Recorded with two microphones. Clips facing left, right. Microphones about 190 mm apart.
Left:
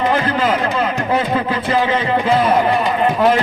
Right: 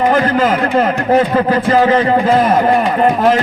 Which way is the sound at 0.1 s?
45° right (ahead or behind).